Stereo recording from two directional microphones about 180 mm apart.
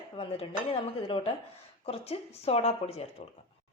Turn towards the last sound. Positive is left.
turn(degrees=35)  # may be behind; listen again after turning